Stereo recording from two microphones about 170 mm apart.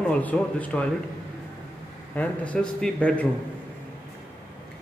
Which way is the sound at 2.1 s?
10° left (ahead or behind).